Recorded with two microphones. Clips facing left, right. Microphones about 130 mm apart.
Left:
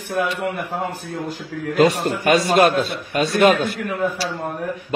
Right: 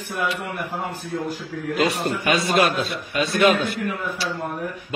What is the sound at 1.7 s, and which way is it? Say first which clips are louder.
A man's voice: left 5 dB; 45° left (ahead or behind).